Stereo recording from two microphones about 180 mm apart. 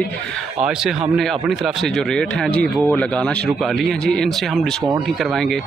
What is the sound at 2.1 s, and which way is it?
A man's voice, 5° left (ahead or behind).